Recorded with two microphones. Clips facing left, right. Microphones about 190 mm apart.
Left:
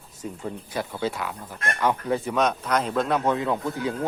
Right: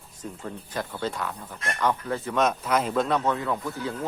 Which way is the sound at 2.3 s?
Centre (ahead or behind).